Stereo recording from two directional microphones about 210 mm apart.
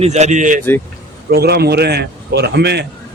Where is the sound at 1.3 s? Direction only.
50° right (ahead or behind).